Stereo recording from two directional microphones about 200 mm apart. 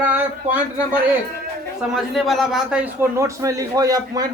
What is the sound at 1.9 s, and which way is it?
A man's voice, centre (ahead or behind).